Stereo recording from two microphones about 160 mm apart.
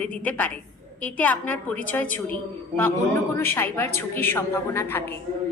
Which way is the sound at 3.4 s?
15° left (ahead or behind).